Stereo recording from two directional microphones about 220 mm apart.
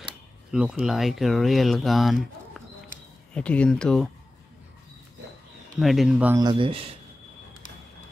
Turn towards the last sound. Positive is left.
turn(degrees=-25)  # may be behind; listen again after turning